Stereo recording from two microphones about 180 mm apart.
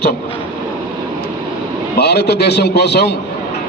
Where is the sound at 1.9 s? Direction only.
65° left (ahead or behind).